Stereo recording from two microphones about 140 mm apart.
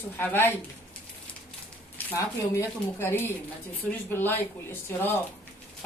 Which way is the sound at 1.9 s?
20° left (ahead or behind).